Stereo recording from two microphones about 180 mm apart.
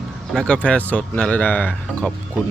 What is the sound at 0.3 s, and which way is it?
Speech, 5° left (ahead or behind).